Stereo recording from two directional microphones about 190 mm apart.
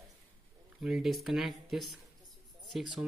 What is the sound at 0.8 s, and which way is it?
Speech, centre (ahead or behind).